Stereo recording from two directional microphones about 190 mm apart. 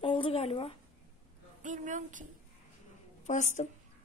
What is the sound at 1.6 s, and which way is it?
Speech, 40° right (ahead or behind).